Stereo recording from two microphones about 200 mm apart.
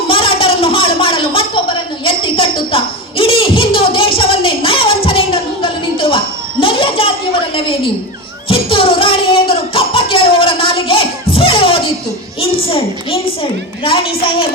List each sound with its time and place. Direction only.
0.1 s a sound: 25° left (ahead or behind)
7.5 s a woman's voice: 25° left (ahead or behind)
8.4 s music: 25° left (ahead or behind)
12.5 s a woman's voice: 30° left (ahead or behind)